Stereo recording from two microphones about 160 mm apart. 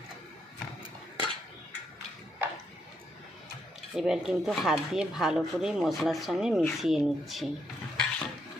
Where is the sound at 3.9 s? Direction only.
5° right (ahead or behind).